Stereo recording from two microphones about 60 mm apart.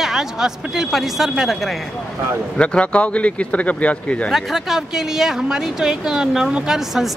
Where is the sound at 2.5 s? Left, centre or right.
Centre.